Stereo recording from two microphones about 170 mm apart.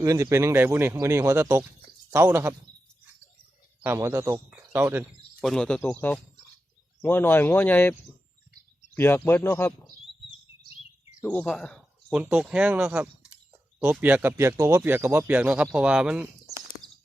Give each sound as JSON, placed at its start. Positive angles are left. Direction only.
{"t": 0.0, "sound": "speech", "side_deg": -15}
{"t": 3.8, "sound": "speech", "side_deg": -15}
{"t": 5.4, "sound": "speech", "side_deg": 5}
{"t": 9.0, "sound": "speech", "side_deg": 15}
{"t": 11.2, "sound": "speech", "side_deg": 10}
{"t": 12.1, "sound": "speech", "side_deg": -5}
{"t": 16.8, "sound": "horse", "side_deg": 5}